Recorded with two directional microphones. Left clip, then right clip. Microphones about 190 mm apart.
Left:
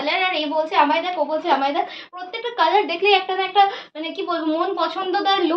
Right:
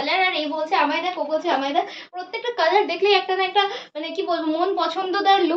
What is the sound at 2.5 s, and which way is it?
A child's voice, 20° right (ahead or behind).